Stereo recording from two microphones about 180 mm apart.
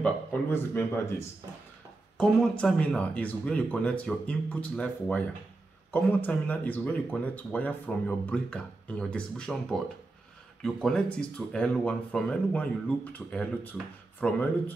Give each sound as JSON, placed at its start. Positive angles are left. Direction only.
{"t": 0.0, "sound": "speech", "side_deg": 10}
{"t": 2.1, "sound": "speech", "side_deg": 5}